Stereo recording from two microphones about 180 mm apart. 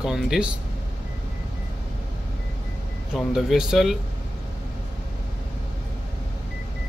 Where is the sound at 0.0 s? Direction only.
5° right (ahead or behind).